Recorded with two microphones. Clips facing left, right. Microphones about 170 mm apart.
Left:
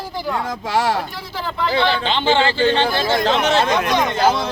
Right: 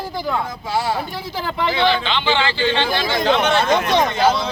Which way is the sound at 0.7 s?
90° left.